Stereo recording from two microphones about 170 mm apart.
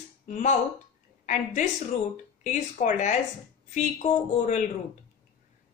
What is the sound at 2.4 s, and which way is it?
Speech, 45° left (ahead or behind).